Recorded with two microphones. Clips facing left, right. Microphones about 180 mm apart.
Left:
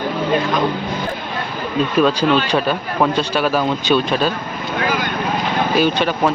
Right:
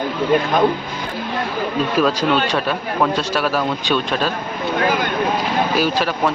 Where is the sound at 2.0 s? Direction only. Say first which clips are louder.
Left 2 dB; centre (ahead or behind).